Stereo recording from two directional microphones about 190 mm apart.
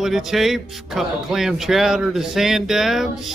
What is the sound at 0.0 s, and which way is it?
Speech, centre (ahead or behind).